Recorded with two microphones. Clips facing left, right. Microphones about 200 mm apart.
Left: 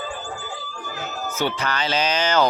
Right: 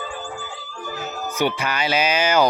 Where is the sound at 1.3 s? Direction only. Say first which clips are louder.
Right 2 dB; 15° right (ahead or behind).